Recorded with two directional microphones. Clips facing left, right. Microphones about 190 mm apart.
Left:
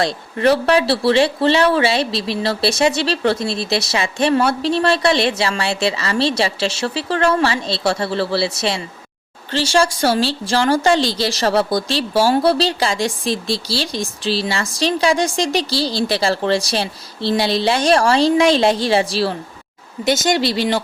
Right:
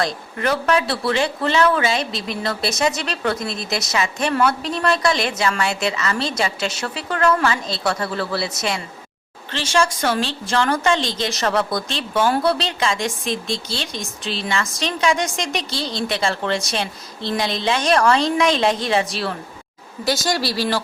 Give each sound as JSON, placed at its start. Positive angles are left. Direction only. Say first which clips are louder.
{"t": 0.0, "sound": "a woman's voice", "louder": "left 6 dB", "side_deg": 30}